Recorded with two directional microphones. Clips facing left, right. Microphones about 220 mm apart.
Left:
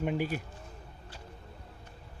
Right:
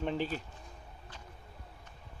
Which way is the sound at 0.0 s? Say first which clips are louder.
Left 2 dB; 10° left (ahead or behind).